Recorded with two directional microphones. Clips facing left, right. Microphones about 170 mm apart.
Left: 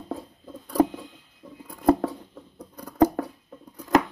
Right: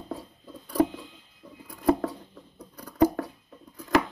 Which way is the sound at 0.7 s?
45° left (ahead or behind).